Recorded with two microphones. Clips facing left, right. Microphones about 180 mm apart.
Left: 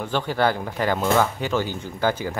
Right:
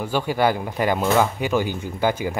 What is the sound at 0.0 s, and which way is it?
Speech, 10° right (ahead or behind).